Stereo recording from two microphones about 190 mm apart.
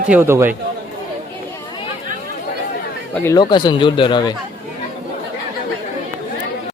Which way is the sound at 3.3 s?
25° left (ahead or behind).